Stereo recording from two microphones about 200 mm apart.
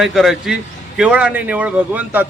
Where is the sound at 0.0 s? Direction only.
Centre (ahead or behind).